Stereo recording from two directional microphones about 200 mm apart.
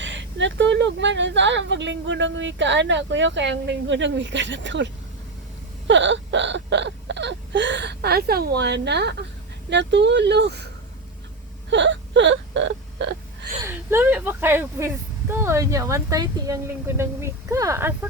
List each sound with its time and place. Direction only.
0.0 s speech: 65° right (ahead or behind)
5.9 s wail: 65° right (ahead or behind)
9.6 s speech: 60° right (ahead or behind)
11.7 s wail: 65° right (ahead or behind)
13.6 s a woman's voice: 10° right (ahead or behind)